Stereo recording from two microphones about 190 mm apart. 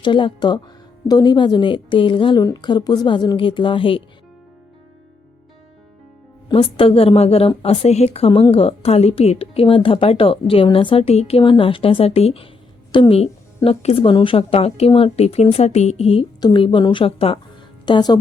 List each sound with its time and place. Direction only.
0.0 s a woman's voice: 25° left (ahead or behind)
6.5 s a woman's voice: 30° left (ahead or behind)